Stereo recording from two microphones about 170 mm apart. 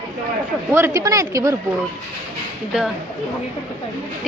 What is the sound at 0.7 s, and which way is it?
Speech, 15° right (ahead or behind).